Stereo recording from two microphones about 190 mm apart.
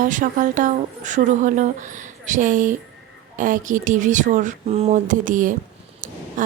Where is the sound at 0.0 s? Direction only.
45° right (ahead or behind).